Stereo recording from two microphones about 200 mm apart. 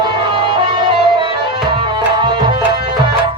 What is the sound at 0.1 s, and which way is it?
Music, 25° right (ahead or behind).